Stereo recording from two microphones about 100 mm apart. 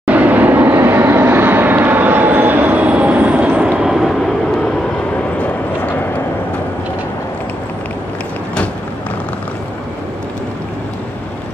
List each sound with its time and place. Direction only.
0.0 s vehicle: 15° right (ahead or behind)
5.4 s dog: 15° left (ahead or behind)